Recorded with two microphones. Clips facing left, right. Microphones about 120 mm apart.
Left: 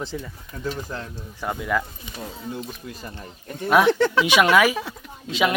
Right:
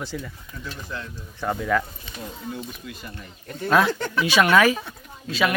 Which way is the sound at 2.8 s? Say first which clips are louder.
Left 2 dB; 35° left (ahead or behind).